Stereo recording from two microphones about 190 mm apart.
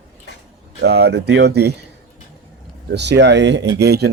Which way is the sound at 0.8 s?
60° right (ahead or behind).